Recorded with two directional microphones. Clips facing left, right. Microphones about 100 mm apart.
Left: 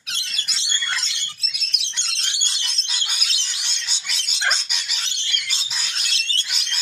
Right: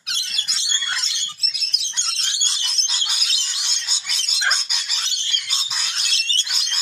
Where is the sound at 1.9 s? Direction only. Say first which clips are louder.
Right 2 dB; 30° right (ahead or behind).